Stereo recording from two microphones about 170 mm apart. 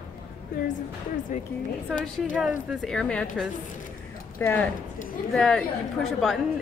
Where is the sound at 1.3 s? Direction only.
45° left (ahead or behind).